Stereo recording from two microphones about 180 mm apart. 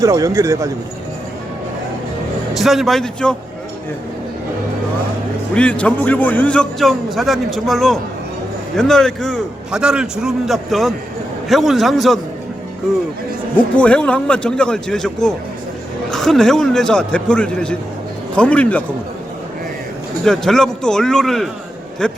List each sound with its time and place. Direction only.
0.0 s speech: 20° right (ahead or behind)
2.6 s a man's voice: centre (ahead or behind)
5.5 s a man's voice: 5° left (ahead or behind)
13.7 s a man's voice: 5° left (ahead or behind)
20.2 s a man's voice: centre (ahead or behind)